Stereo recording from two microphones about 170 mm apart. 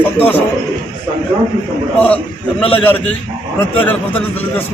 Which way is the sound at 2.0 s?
10° left (ahead or behind).